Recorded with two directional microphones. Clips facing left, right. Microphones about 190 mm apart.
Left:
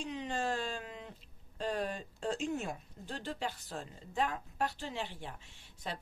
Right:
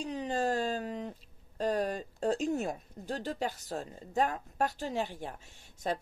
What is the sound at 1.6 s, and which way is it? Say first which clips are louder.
Speech: right 5 dB; 40° right (ahead or behind).